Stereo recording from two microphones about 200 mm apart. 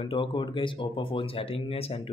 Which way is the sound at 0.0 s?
25° left (ahead or behind).